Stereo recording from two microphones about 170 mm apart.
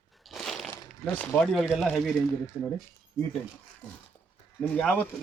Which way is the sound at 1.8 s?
Centre (ahead or behind).